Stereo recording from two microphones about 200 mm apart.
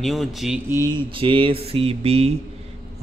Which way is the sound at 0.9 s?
25° right (ahead or behind).